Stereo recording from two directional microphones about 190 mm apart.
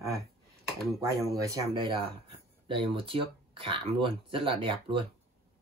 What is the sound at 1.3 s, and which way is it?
Speech, 20° right (ahead or behind).